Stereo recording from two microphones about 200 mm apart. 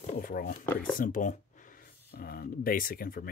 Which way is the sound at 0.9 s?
40° left (ahead or behind).